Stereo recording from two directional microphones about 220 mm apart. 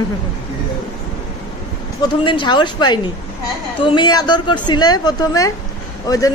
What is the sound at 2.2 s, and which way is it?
A woman's voice, 20° left (ahead or behind).